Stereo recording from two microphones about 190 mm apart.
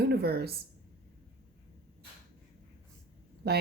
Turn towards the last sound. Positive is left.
turn(degrees=-55)  # may be behind; listen again after turning